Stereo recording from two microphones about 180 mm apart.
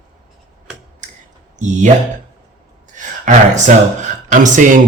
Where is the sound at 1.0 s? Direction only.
45° right (ahead or behind).